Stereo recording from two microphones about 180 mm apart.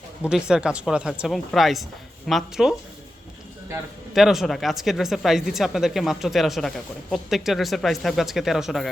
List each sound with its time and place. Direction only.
0.3 s speech: 5° right (ahead or behind)
4.1 s speech: centre (ahead or behind)